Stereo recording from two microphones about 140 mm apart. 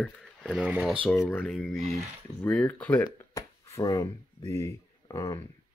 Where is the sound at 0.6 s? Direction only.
10° right (ahead or behind).